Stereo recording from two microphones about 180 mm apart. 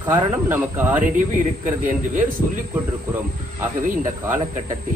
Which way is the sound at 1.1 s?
45° right (ahead or behind).